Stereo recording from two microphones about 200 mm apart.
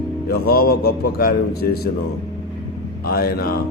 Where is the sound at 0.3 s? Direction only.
50° left (ahead or behind).